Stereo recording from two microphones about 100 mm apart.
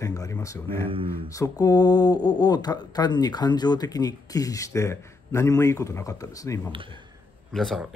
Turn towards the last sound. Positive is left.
turn(degrees=0)  # may be behind; listen again after turning